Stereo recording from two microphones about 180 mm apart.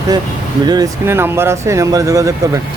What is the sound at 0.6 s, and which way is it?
Speech, 20° right (ahead or behind).